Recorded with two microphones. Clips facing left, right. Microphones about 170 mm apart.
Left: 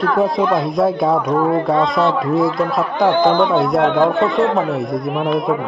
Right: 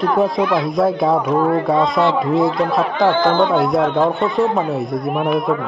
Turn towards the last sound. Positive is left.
turn(degrees=0)  # may be behind; listen again after turning